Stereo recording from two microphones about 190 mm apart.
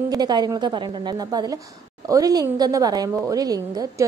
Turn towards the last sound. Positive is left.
turn(degrees=-20)  # may be behind; listen again after turning